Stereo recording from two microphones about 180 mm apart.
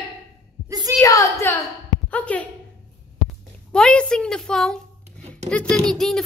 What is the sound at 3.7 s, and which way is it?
A child's voice, 5° left (ahead or behind).